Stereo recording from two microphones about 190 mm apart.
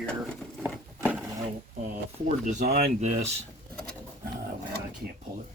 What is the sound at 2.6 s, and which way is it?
Speech, 55° right (ahead or behind).